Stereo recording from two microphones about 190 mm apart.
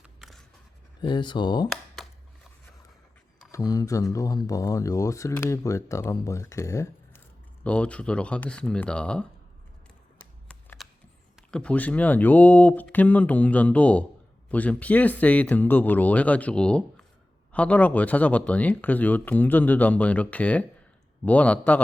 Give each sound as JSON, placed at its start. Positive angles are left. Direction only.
{"t": 0.0, "sound": "scissors", "side_deg": 0}
{"t": 1.0, "sound": "speech", "side_deg": 25}
{"t": 2.0, "sound": "a sound", "side_deg": 0}
{"t": 3.5, "sound": "speech", "side_deg": 20}
{"t": 10.5, "sound": "a sound", "side_deg": 5}
{"t": 11.5, "sound": "speech", "side_deg": 5}